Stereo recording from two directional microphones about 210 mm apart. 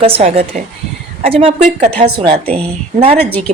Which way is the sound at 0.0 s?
25° right (ahead or behind).